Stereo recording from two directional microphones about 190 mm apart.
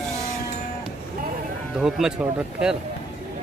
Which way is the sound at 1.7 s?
5° right (ahead or behind).